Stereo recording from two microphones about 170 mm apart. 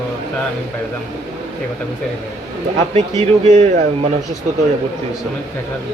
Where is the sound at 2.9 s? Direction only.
40° right (ahead or behind).